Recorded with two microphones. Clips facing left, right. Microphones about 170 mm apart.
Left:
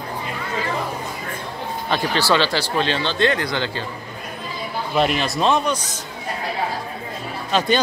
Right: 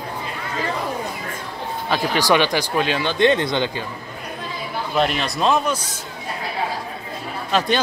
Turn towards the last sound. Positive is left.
turn(degrees=0)  # may be behind; listen again after turning